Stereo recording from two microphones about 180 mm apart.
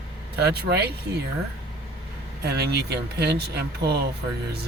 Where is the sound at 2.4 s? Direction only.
65° right (ahead or behind).